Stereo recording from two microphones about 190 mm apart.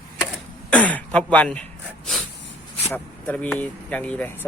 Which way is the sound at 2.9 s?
10° left (ahead or behind).